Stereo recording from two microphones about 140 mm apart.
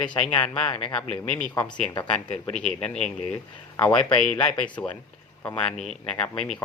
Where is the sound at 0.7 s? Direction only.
35° left (ahead or behind).